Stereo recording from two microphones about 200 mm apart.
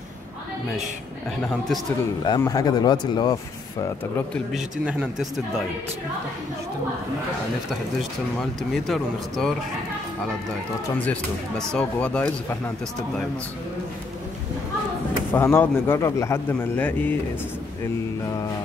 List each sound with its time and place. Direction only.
1.4 s speech: 5° left (ahead or behind)
2.2 s speech: 20° left (ahead or behind)
4.5 s speech: centre (ahead or behind)
8.4 s speech: centre (ahead or behind)
11.1 s speech: 5° left (ahead or behind)
15.3 s a man's voice: 10° left (ahead or behind)